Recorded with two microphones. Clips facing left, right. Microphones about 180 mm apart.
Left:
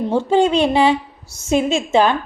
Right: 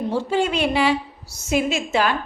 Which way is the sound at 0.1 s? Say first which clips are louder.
Left 7 dB; 25° left (ahead or behind).